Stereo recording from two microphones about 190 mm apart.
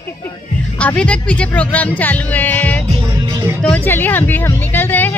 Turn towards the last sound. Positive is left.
turn(degrees=10)  # may be behind; listen again after turning